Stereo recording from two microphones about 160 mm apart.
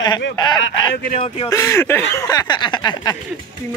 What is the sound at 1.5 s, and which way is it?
Speech, 15° left (ahead or behind).